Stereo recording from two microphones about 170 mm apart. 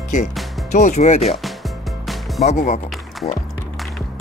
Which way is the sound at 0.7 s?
45° left (ahead or behind).